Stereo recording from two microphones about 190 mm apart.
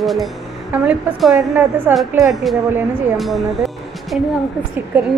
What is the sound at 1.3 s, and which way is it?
Speech, 15° right (ahead or behind).